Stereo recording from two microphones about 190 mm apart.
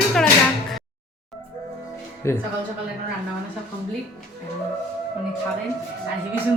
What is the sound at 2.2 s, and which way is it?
Speech, 15° left (ahead or behind).